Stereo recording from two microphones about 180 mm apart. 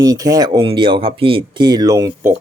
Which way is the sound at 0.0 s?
20° right (ahead or behind).